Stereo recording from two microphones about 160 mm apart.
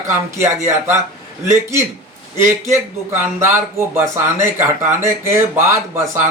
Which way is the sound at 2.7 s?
15° right (ahead or behind).